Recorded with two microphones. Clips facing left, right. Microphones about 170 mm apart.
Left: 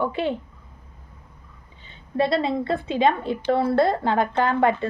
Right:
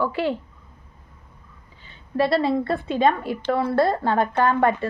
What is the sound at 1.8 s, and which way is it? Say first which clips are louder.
A woman's voice: right 1 dB; 20° left (ahead or behind).